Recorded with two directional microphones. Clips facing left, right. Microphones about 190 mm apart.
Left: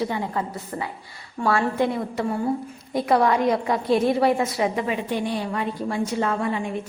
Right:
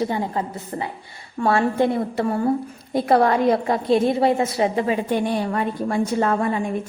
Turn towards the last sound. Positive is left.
turn(degrees=-45)  # may be behind; listen again after turning